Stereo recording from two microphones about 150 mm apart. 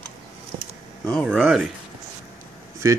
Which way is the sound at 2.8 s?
20° right (ahead or behind).